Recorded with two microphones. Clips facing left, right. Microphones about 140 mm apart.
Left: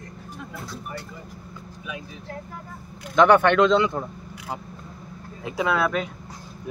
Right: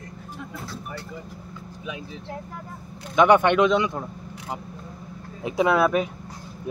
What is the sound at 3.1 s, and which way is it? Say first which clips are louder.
Speech: left 1 dB; 15° right (ahead or behind).